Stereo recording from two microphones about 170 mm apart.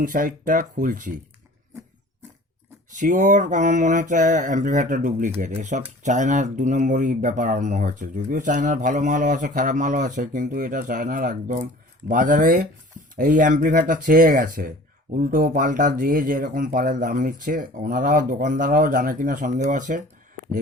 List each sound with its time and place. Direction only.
0.0 s speech: 50° right (ahead or behind)
2.9 s speech: 50° right (ahead or behind)